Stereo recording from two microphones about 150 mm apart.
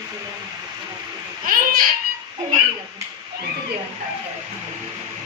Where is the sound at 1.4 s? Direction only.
70° right (ahead or behind).